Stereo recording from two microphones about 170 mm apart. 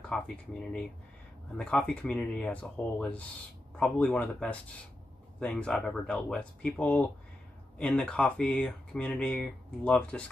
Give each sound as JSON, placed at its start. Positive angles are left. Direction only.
{"t": 0.1, "sound": "speech", "side_deg": 5}
{"t": 1.6, "sound": "speech", "side_deg": 5}